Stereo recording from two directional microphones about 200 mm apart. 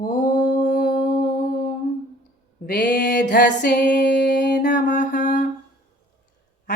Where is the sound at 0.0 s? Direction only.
40° left (ahead or behind).